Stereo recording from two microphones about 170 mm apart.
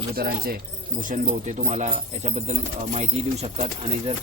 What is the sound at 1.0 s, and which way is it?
Speech, 45° right (ahead or behind).